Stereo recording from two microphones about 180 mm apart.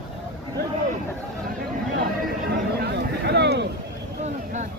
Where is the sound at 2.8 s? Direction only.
65° right (ahead or behind).